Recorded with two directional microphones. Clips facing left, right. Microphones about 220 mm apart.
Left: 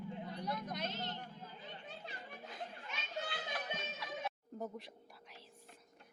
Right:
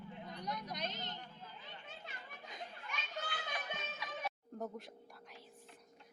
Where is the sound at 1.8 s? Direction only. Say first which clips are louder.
Left 3 dB; 35° left (ahead or behind).